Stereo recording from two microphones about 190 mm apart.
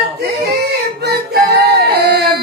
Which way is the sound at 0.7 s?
60° right (ahead or behind).